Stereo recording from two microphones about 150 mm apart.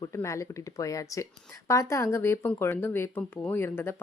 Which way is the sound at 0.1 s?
20° left (ahead or behind).